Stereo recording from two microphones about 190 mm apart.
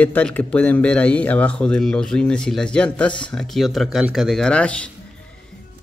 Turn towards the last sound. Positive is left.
turn(degrees=5)  # may be behind; listen again after turning